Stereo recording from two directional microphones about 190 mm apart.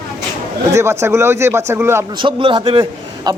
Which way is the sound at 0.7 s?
15° right (ahead or behind).